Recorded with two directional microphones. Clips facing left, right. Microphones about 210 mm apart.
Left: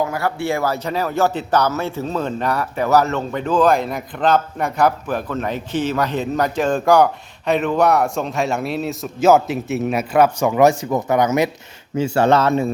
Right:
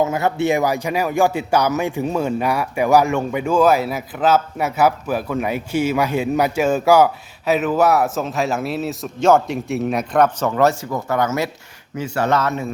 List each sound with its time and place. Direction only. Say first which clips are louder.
0.0 s speech: right 3 dB; 20° right (ahead or behind); by 11.5 s 15° left (ahead or behind)
11.9 s a man's voice: left 4 dB; 30° left (ahead or behind)